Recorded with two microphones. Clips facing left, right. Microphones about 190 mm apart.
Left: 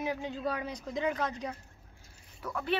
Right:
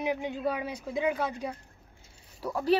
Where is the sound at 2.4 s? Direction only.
30° right (ahead or behind).